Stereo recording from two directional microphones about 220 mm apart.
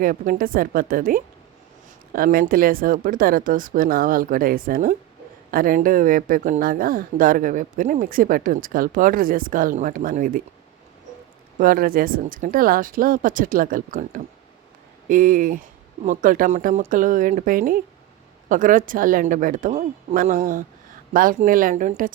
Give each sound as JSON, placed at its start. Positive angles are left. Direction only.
{"t": 0.0, "sound": "speech", "side_deg": -40}
{"t": 11.6, "sound": "speech", "side_deg": -40}